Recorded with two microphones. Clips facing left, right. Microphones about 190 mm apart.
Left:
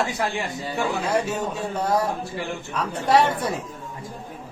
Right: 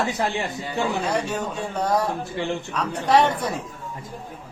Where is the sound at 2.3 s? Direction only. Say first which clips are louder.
Right 3 dB; 15° right (ahead or behind).